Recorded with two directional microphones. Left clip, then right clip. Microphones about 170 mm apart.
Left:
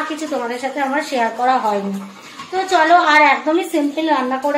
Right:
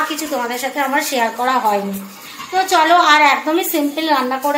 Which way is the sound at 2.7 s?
15° left (ahead or behind).